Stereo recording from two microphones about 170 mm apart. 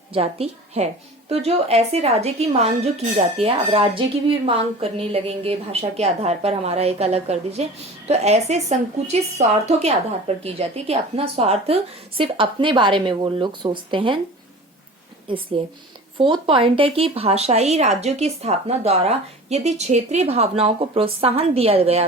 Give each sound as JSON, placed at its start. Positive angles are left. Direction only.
{"t": 0.1, "sound": "a woman's voice", "side_deg": -35}
{"t": 15.6, "sound": "speech", "side_deg": -35}